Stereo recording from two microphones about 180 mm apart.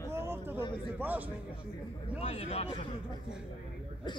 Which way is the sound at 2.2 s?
35° left (ahead or behind).